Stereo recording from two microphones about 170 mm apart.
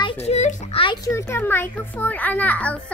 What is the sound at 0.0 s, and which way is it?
Speech, 40° left (ahead or behind).